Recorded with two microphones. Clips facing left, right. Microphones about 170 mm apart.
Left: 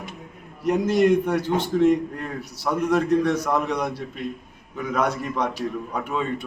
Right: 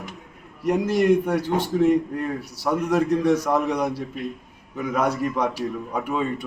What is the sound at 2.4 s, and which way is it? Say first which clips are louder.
A man's voice: even; 10° right (ahead or behind).